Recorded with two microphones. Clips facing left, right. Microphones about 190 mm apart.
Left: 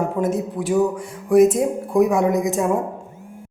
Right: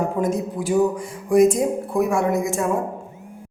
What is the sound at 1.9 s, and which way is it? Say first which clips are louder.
Speech: left 4 dB; 15° left (ahead or behind).